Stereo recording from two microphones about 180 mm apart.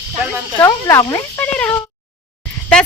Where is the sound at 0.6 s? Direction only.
15° left (ahead or behind).